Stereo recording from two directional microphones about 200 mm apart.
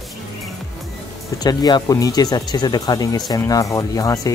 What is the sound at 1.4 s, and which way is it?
Speech, 20° left (ahead or behind).